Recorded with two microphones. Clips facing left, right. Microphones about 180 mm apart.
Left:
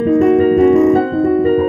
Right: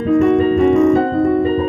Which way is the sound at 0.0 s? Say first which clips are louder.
Left 2 dB; 40° left (ahead or behind).